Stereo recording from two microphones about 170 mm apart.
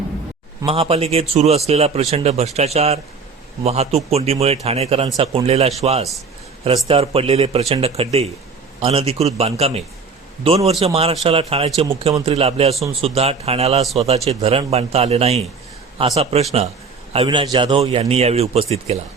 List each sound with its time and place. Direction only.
0.6 s a man's voice: 35° right (ahead or behind)